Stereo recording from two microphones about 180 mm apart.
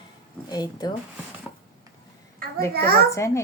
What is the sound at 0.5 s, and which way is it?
Speech, 20° left (ahead or behind).